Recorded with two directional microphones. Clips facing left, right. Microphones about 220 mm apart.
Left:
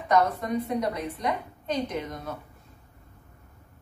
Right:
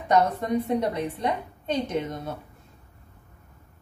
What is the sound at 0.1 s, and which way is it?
A woman's voice, 25° right (ahead or behind).